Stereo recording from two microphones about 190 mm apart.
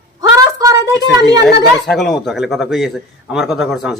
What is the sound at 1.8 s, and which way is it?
Speech, centre (ahead or behind).